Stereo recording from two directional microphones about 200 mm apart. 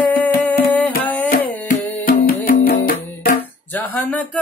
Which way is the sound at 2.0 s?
45° left (ahead or behind).